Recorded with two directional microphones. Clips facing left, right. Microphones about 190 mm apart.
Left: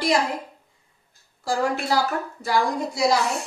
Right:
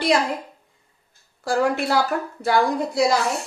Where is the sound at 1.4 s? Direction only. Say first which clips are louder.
Right 3 dB; 60° right (ahead or behind).